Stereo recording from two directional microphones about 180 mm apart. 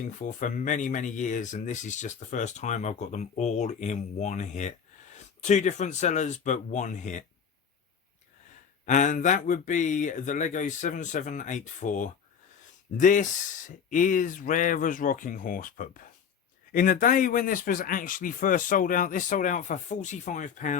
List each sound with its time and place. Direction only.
0.2 s speech: 45° left (ahead or behind)
8.9 s speech: 45° left (ahead or behind)